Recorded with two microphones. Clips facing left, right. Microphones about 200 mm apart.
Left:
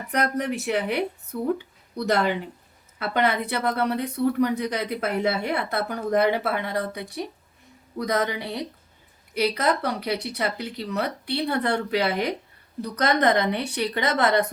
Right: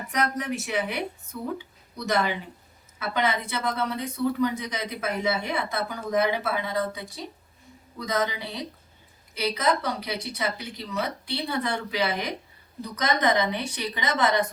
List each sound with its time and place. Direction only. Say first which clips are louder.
0.1 s a woman's voice: left 3 dB; 60° left (ahead or behind)